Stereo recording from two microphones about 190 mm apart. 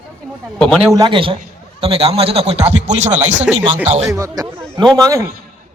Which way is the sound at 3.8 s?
35° right (ahead or behind).